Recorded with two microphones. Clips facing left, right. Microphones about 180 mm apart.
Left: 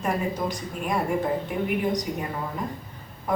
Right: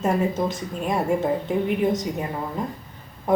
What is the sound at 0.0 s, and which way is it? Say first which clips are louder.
Speech: right 4 dB; 25° right (ahead or behind).